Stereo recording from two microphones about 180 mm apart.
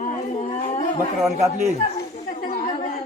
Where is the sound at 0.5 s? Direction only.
40° left (ahead or behind).